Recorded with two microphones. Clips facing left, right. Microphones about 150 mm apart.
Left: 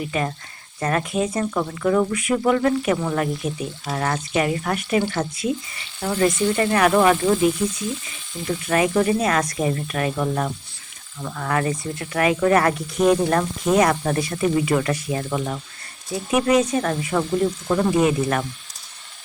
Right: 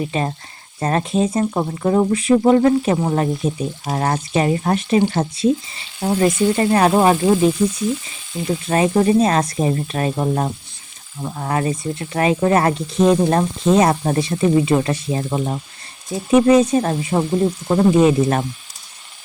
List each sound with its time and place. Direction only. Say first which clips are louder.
0.0 s speech: right 3 dB; 30° right (ahead or behind)
8.4 s speech: right 3 dB; 25° right (ahead or behind)